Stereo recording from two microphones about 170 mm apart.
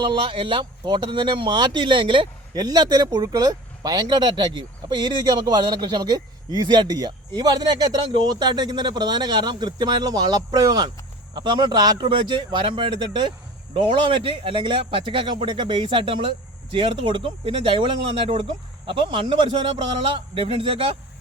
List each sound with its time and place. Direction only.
0.0 s a man's voice: 30° right (ahead or behind)